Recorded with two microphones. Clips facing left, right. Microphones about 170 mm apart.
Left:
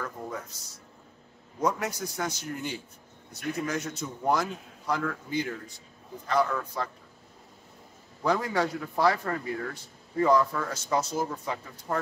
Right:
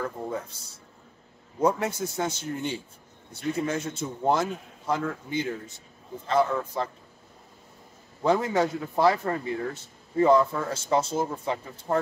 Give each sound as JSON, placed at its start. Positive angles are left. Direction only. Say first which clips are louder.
{"t": 0.0, "sound": "a man's voice", "louder": "right 5 dB", "side_deg": -30}
{"t": 8.2, "sound": "a man's voice", "louder": "right 3 dB", "side_deg": -25}